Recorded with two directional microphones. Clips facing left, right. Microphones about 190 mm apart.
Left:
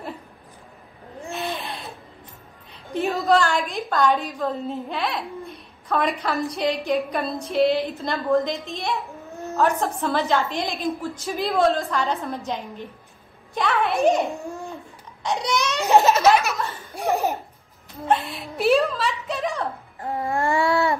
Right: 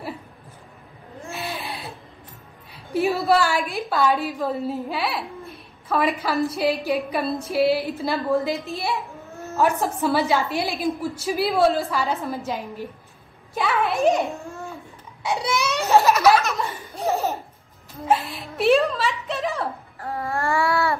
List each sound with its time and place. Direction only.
1.3 s a sound: 5° right (ahead or behind)
2.7 s music: 5° right (ahead or behind)
3.3 s a woman's voice: 5° right (ahead or behind)
15.8 s babbling: 20° left (ahead or behind)
16.9 s laughter: 15° left (ahead or behind)
18.0 s a woman's voice: 5° right (ahead or behind)
20.0 s babbling: 20° left (ahead or behind)